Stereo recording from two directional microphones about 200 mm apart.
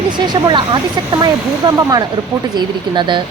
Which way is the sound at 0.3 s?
20° right (ahead or behind).